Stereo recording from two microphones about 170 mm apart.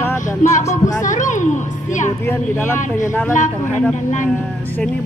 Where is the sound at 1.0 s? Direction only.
45° left (ahead or behind).